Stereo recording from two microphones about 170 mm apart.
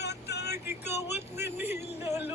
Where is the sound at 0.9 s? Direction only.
15° right (ahead or behind).